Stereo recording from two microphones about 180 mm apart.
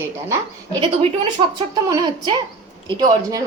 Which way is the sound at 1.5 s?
20° right (ahead or behind).